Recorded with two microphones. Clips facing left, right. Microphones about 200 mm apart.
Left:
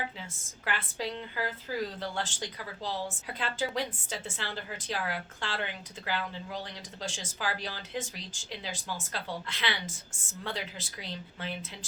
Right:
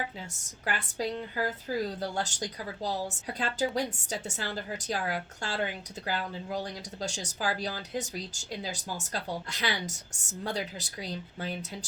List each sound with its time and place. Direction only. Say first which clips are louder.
0.9 s a woman's voice: right 3 dB; 40° right (ahead or behind)
9.8 s a woman's voice: right 3 dB; 75° right (ahead or behind)
10.4 s a woman's voice: right 4 dB; 40° right (ahead or behind)